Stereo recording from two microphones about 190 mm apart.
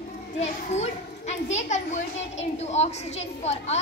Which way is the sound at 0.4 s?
35° left (ahead or behind).